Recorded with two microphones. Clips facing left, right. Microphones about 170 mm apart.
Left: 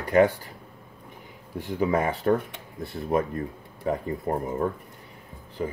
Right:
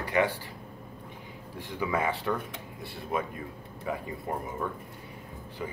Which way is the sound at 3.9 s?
45° left (ahead or behind).